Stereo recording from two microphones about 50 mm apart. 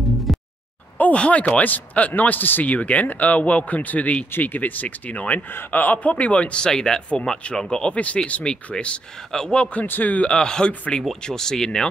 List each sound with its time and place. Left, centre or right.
0.3 s music: centre
1.1 s speech: left
1.6 s a man's voice: left
6.6 s speech: centre
9.3 s speech: centre
9.8 s a man's voice: left
10.3 s speech: centre